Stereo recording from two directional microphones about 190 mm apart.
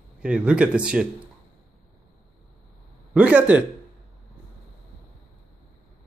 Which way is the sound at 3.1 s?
5° right (ahead or behind).